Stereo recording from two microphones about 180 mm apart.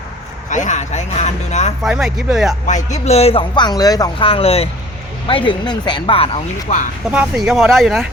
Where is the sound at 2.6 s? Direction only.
40° left (ahead or behind).